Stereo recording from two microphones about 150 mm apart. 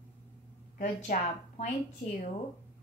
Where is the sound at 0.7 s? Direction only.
50° left (ahead or behind).